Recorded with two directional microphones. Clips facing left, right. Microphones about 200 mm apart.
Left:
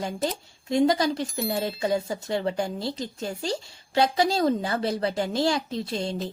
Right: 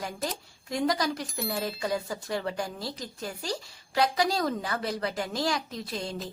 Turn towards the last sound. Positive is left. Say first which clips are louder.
# left 6 dB
turn(degrees=25)  # may be behind; listen again after turning